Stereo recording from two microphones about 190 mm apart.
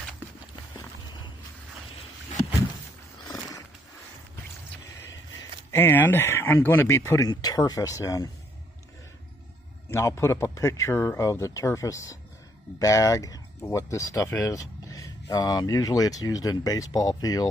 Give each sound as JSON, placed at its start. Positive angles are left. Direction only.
{"t": 3.3, "sound": "horse", "side_deg": 20}
{"t": 5.7, "sound": "speech", "side_deg": 10}
{"t": 9.9, "sound": "speech", "side_deg": 15}